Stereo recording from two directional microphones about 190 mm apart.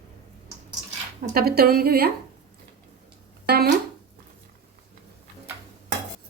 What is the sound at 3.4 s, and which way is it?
Speech, 55° right (ahead or behind).